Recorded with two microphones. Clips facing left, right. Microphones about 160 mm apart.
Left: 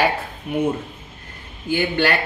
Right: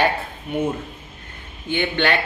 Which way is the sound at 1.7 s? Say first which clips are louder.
Left 2 dB; 5° left (ahead or behind).